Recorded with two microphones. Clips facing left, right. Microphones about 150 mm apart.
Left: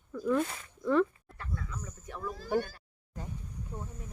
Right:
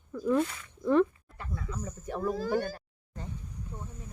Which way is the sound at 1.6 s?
35° right (ahead or behind).